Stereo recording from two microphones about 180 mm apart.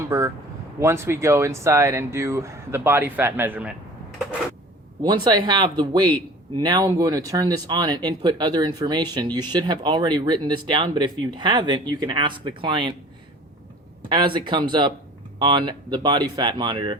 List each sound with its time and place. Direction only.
0.1 s speech: 15° right (ahead or behind)
5.0 s speech: 25° right (ahead or behind)
14.1 s speech: 25° right (ahead or behind)